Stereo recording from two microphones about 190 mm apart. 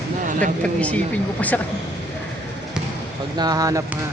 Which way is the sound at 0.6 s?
5° left (ahead or behind).